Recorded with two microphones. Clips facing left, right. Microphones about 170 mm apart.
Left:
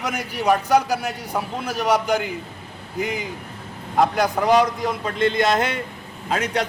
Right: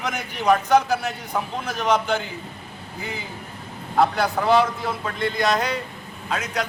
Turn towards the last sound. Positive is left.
turn(degrees=35)  # may be behind; listen again after turning